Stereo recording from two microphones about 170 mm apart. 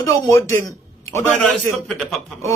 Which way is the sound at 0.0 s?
15° left (ahead or behind).